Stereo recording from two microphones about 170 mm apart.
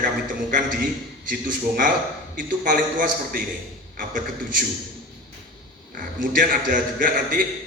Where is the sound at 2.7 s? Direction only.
55° right (ahead or behind).